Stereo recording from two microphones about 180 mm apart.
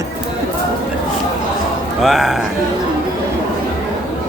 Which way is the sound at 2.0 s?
Centre (ahead or behind).